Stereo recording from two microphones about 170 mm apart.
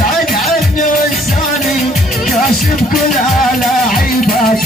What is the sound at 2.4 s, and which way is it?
Music, 55° left (ahead or behind).